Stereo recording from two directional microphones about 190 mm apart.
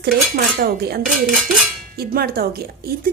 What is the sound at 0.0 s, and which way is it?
A woman's voice, 55° right (ahead or behind).